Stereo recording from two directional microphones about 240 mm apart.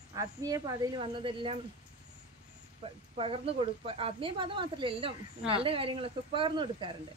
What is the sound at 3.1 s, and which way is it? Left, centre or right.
A woman's voice, right.